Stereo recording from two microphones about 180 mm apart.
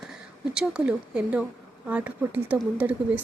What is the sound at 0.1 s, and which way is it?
A woman's voice, 5° right (ahead or behind).